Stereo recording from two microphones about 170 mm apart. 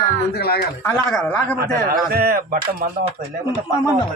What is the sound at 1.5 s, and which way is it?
A man's voice, 60° right (ahead or behind).